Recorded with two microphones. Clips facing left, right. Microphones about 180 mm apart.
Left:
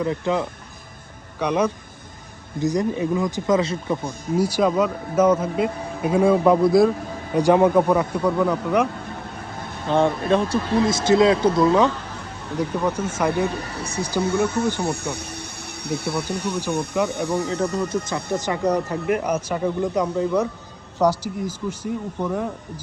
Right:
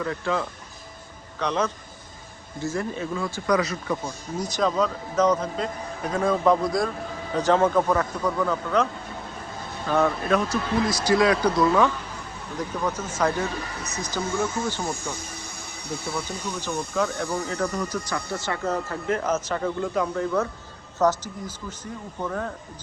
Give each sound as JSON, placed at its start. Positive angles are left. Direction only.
{"t": 0.0, "sound": "speech", "side_deg": 20}
{"t": 4.4, "sound": "speech", "side_deg": 10}
{"t": 9.8, "sound": "speech", "side_deg": 25}
{"t": 12.5, "sound": "speech", "side_deg": 10}
{"t": 14.8, "sound": "speech", "side_deg": 65}
{"t": 16.5, "sound": "speech", "side_deg": 10}